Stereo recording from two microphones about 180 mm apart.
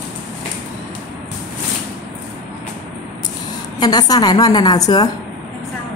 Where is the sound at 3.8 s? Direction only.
20° left (ahead or behind).